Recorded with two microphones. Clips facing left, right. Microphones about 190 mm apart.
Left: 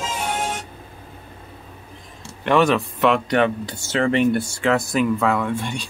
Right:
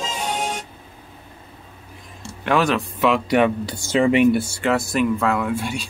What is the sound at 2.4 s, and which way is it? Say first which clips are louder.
Speech: left 2 dB; centre (ahead or behind).